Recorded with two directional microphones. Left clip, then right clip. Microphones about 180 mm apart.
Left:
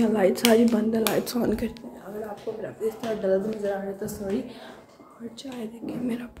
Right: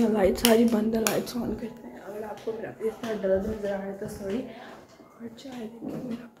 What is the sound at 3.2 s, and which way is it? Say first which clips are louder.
Speech: left 1 dB; 20° left (ahead or behind).